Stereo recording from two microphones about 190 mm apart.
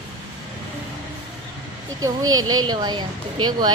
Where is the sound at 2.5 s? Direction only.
20° right (ahead or behind).